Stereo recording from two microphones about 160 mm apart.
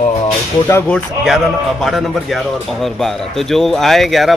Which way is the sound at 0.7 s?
15° left (ahead or behind).